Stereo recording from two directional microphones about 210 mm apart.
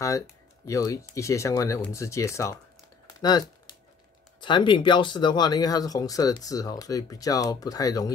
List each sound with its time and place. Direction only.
0.7 s speech: 15° left (ahead or behind)
3.1 s typing: 20° left (ahead or behind)
4.4 s speech: 20° left (ahead or behind)